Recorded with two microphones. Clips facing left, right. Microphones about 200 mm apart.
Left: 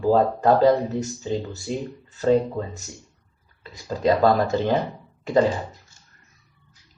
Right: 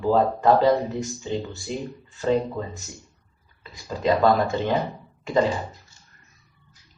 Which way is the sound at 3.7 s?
40° left (ahead or behind).